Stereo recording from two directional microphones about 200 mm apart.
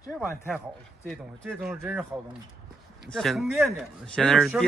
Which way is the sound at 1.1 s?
Centre (ahead or behind).